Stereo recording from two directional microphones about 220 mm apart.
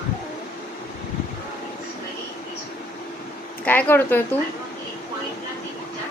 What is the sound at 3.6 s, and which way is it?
Speech, 10° left (ahead or behind).